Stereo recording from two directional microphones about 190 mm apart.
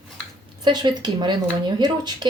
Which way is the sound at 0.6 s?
25° right (ahead or behind).